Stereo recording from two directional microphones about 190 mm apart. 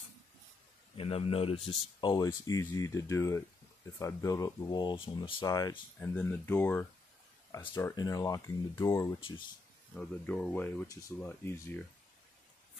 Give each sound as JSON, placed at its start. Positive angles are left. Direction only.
{"t": 0.9, "sound": "a man's voice", "side_deg": 30}